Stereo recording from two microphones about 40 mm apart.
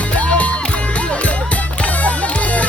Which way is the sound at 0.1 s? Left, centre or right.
Left.